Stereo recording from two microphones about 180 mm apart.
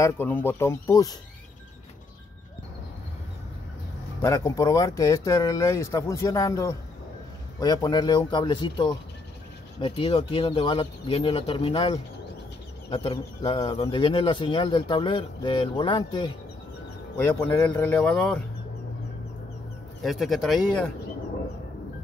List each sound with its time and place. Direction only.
0.0 s speech: 10° left (ahead or behind)
4.2 s speech: 15° left (ahead or behind)
17.2 s speech: 10° left (ahead or behind)
20.0 s speech: centre (ahead or behind)